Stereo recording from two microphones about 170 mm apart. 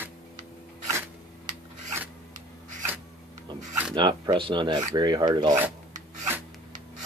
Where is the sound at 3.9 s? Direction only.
25° right (ahead or behind).